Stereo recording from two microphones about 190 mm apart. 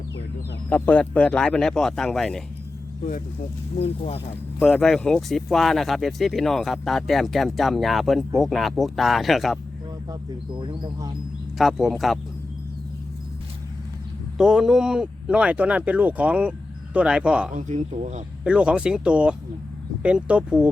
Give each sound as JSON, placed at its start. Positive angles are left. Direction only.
{"t": 0.7, "sound": "speech", "side_deg": 10}
{"t": 3.0, "sound": "speech", "side_deg": 45}
{"t": 3.8, "sound": "speech", "side_deg": 35}
{"t": 4.6, "sound": "speech", "side_deg": 5}
{"t": 10.1, "sound": "speech", "side_deg": -25}
{"t": 11.5, "sound": "speech", "side_deg": 0}
{"t": 14.3, "sound": "speech", "side_deg": -5}
{"t": 17.5, "sound": "speech", "side_deg": -40}
{"t": 18.4, "sound": "speech", "side_deg": -5}